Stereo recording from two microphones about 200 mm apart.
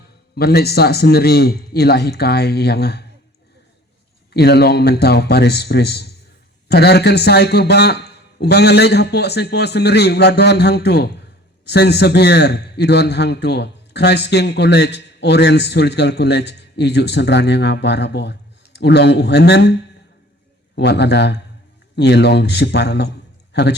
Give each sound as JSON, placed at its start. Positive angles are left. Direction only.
{"t": 0.3, "sound": "a man's voice", "side_deg": 50}
{"t": 4.4, "sound": "a man's voice", "side_deg": 55}
{"t": 20.7, "sound": "a man's voice", "side_deg": 60}